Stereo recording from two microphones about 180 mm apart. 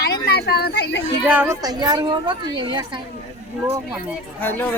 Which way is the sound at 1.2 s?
10° right (ahead or behind).